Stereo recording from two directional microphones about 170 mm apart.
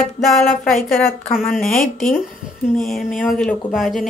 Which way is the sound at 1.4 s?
5° left (ahead or behind).